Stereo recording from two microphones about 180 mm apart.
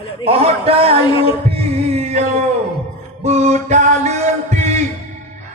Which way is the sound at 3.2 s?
40° right (ahead or behind).